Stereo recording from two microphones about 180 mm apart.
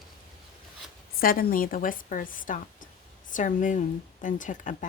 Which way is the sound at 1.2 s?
50° left (ahead or behind).